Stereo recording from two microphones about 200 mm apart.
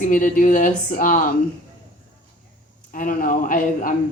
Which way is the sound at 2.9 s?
45° left (ahead or behind).